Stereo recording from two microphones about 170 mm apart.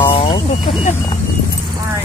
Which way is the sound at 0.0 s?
30° left (ahead or behind).